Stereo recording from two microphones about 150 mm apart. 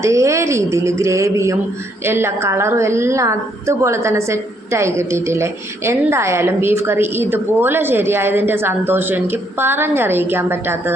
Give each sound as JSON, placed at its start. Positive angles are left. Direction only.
{"t": 0.0, "sound": "a woman's voice", "side_deg": -20}